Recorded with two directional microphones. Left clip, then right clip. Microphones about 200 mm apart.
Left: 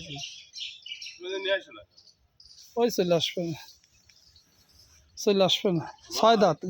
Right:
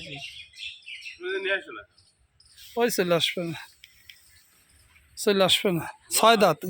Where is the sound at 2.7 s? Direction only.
5° left (ahead or behind).